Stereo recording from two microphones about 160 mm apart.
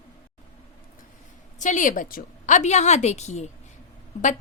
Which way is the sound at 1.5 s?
50° left (ahead or behind).